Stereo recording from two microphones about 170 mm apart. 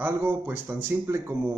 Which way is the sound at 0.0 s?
10° right (ahead or behind).